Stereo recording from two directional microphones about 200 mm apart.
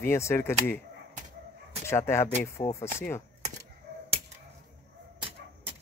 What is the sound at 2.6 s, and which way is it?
Speech, 25° left (ahead or behind).